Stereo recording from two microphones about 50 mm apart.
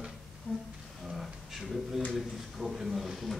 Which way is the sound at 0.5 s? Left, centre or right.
Centre.